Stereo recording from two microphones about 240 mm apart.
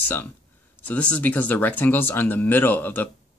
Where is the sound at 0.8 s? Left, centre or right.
Centre.